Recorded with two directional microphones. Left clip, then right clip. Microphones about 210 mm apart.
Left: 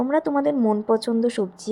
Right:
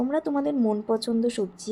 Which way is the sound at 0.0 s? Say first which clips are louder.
Left 5 dB; 15° left (ahead or behind).